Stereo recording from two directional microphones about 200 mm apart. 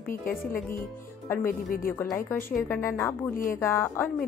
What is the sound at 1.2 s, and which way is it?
Speech, 10° left (ahead or behind).